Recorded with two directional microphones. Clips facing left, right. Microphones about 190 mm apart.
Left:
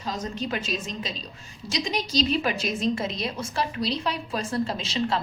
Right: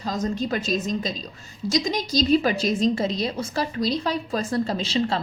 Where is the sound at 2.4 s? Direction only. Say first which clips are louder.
Right 5 dB; 35° right (ahead or behind).